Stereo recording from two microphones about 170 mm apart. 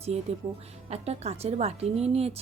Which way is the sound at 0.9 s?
40° right (ahead or behind).